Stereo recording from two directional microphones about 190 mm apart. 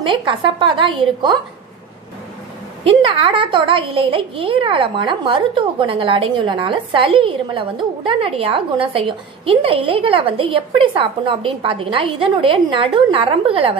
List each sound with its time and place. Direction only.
0.0 s a child's voice: 25° right (ahead or behind)
2.8 s a child's voice: 30° right (ahead or behind)